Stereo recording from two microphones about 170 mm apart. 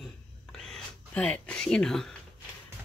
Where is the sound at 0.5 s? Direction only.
Centre (ahead or behind).